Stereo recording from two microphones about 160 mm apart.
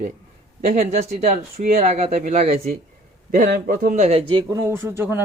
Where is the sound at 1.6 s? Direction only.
60° right (ahead or behind).